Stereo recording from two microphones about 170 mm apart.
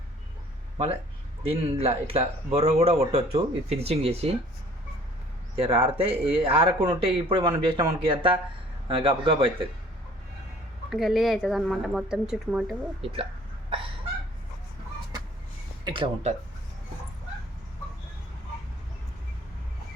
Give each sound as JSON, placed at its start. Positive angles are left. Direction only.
{"t": 1.5, "sound": "speech", "side_deg": -35}
{"t": 5.5, "sound": "speech", "side_deg": -35}
{"t": 10.8, "sound": "a woman's voice", "side_deg": 0}
{"t": 13.0, "sound": "speech", "side_deg": -35}
{"t": 13.7, "sound": "a sound", "side_deg": -30}
{"t": 15.8, "sound": "speech", "side_deg": -30}